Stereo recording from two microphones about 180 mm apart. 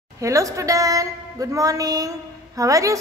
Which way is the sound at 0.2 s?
15° right (ahead or behind).